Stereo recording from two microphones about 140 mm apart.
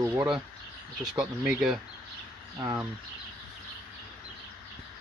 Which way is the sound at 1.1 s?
5° right (ahead or behind).